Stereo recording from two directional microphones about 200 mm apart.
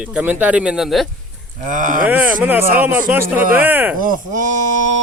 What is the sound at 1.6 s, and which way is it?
Speech, 40° right (ahead or behind).